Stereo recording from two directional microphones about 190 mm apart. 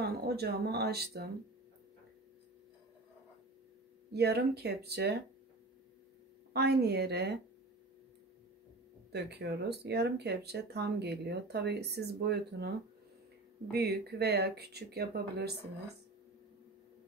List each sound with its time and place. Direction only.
0.0 s speech: 55° right (ahead or behind)
4.1 s speech: 60° right (ahead or behind)
6.5 s speech: 60° right (ahead or behind)
9.1 s speech: 60° right (ahead or behind)